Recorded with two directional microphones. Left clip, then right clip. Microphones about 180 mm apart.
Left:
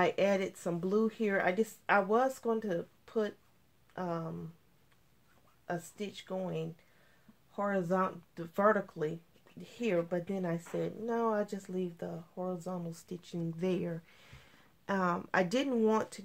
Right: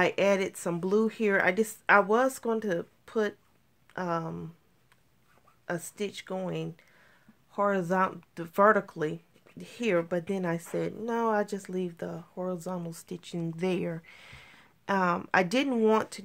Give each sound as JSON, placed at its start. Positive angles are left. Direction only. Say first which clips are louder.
{"t": 0.0, "sound": "speech", "louder": "right 4 dB", "side_deg": -50}
{"t": 5.7, "sound": "speech", "louder": "right 5 dB", "side_deg": -55}